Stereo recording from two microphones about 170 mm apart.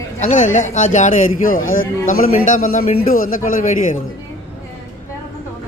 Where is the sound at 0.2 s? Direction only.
45° left (ahead or behind).